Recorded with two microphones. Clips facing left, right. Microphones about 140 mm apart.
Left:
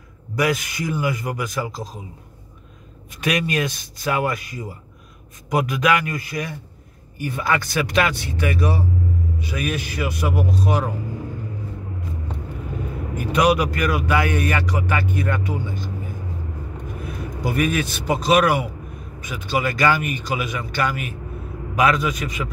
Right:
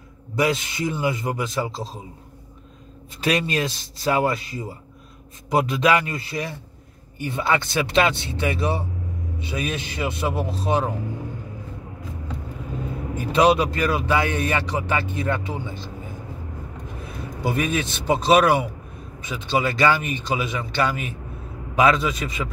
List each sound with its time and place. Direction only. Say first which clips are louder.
0.4 s speech: even; 25° right (ahead or behind)
3.2 s speech: even; 30° right (ahead or behind)
13.1 s speech: right 1 dB; 25° right (ahead or behind)
17.4 s speech: left 2 dB; 25° right (ahead or behind)